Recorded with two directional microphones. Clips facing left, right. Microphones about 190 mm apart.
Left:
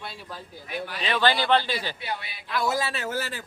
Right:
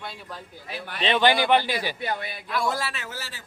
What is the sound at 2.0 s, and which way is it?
Speech, 50° right (ahead or behind).